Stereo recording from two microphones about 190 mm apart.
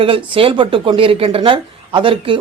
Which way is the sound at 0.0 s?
30° right (ahead or behind).